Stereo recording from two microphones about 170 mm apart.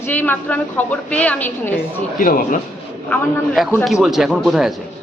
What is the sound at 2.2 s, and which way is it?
Speech, 55° left (ahead or behind).